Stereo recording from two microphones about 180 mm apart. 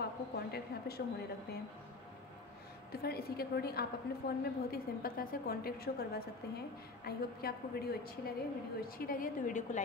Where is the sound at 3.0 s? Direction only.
60° left (ahead or behind).